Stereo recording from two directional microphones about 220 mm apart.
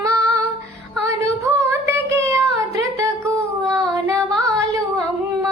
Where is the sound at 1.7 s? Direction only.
15° right (ahead or behind).